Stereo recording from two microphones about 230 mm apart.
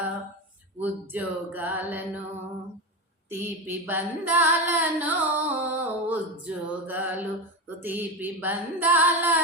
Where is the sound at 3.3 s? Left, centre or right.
Centre.